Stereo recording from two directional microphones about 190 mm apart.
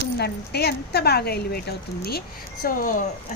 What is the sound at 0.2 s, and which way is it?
Speech, 55° left (ahead or behind).